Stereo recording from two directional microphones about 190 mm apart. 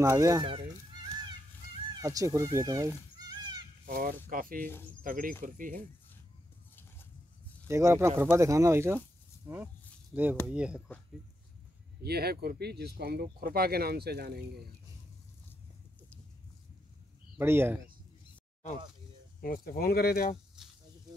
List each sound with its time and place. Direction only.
0.0 s speech: 15° right (ahead or behind)
2.0 s speech: 15° right (ahead or behind)
3.8 s speech: 50° right (ahead or behind)
6.7 s a sound: 10° left (ahead or behind)
7.6 s speech: 15° right (ahead or behind)
10.4 s speech: 5° right (ahead or behind)
12.0 s speech: 55° right (ahead or behind)
17.4 s speech: 10° right (ahead or behind)
19.4 s speech: 50° left (ahead or behind)